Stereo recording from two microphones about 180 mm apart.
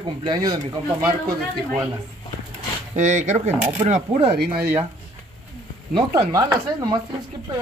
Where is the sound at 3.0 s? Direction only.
40° right (ahead or behind).